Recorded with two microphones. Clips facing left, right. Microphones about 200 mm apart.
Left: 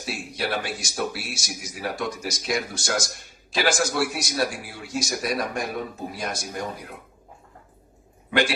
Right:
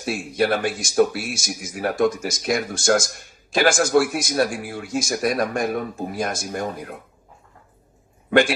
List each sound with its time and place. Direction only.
0.0 s speech: 50° right (ahead or behind)